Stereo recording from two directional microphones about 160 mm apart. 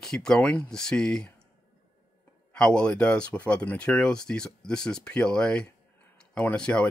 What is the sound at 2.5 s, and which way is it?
Speech, 5° left (ahead or behind).